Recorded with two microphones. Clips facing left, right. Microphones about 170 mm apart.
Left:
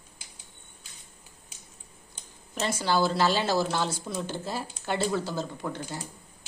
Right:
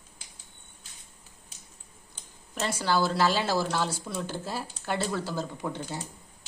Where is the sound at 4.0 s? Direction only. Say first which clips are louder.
Left 1 dB; 5° left (ahead or behind).